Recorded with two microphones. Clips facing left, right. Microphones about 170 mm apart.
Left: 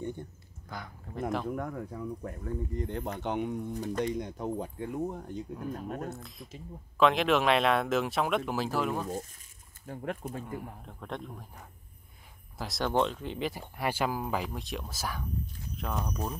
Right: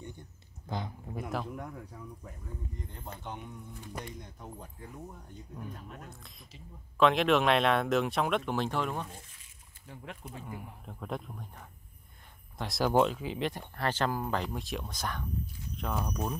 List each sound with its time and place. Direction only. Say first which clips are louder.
0.0 s a sound: left 9 dB; 55° left (ahead or behind)
0.7 s speech: right 5 dB; 25° right (ahead or behind)
1.5 s speech: left 7 dB; 55° left (ahead or behind); by 3.6 s 75° left (ahead or behind)
4.0 s speech: left 13 dB; 90° left
5.8 s speech: left 11 dB; 45° left (ahead or behind)
6.2 s speech: left 8 dB; centre (ahead or behind)
9.0 s speech: left 10 dB; 40° left (ahead or behind)
10.4 s speech: left 4 dB; centre (ahead or behind)